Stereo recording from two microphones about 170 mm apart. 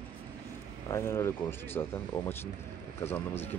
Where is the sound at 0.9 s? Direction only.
15° left (ahead or behind).